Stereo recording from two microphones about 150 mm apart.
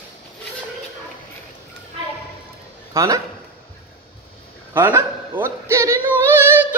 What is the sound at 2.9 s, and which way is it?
Speech, 20° right (ahead or behind).